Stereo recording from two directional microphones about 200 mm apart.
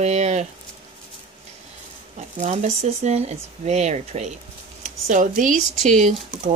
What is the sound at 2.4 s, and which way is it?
Speech, 35° right (ahead or behind).